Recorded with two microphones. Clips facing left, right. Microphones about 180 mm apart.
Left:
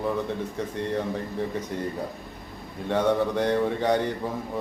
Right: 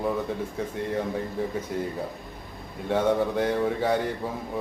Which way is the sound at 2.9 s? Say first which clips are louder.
Even; 5° right (ahead or behind).